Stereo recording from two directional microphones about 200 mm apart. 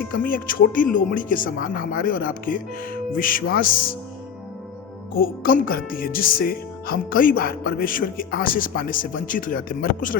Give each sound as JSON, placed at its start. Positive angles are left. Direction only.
{"t": 0.1, "sound": "speech", "side_deg": 45}
{"t": 5.1, "sound": "speech", "side_deg": 45}